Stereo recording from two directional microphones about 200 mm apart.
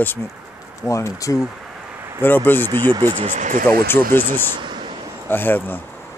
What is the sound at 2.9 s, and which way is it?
Speech, 20° right (ahead or behind).